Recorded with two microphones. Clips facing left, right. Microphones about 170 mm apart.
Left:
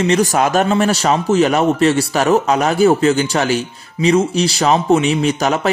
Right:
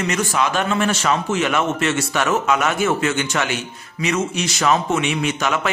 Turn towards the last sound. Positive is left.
turn(degrees=35)  # may be behind; listen again after turning